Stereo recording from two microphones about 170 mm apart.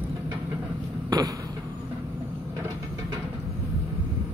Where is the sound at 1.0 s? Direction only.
20° right (ahead or behind).